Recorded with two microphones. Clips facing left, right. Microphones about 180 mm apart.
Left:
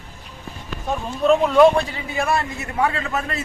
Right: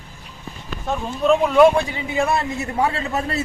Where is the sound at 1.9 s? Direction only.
20° right (ahead or behind).